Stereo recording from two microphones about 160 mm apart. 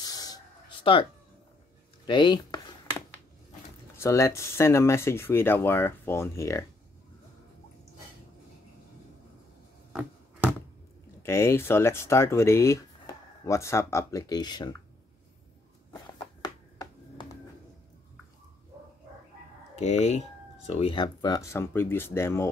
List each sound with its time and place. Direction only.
0.0 s a sound: 25° left (ahead or behind)
2.0 s a sound: 30° left (ahead or behind)
3.9 s speech: 15° left (ahead or behind)
11.2 s speech: 15° left (ahead or behind)
16.4 s finger snapping: 25° left (ahead or behind)
19.8 s speech: 45° left (ahead or behind); by 22.5 s 15° left (ahead or behind)